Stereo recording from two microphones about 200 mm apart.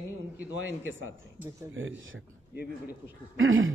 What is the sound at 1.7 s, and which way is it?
Speech, 75° right (ahead or behind).